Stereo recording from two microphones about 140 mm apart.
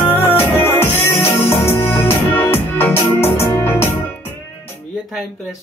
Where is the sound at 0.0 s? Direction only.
15° left (ahead or behind).